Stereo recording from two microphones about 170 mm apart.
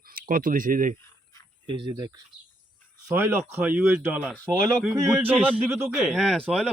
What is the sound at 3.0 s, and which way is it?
Speech, 15° right (ahead or behind).